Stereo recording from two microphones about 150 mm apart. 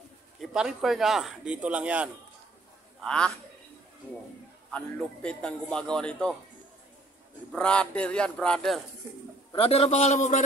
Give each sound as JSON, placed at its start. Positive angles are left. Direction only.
{"t": 0.4, "sound": "speech", "side_deg": -5}
{"t": 3.0, "sound": "a man's voice", "side_deg": 5}
{"t": 4.6, "sound": "speech", "side_deg": 5}
{"t": 7.5, "sound": "a man's voice", "side_deg": 5}
{"t": 9.6, "sound": "a man's voice", "side_deg": 45}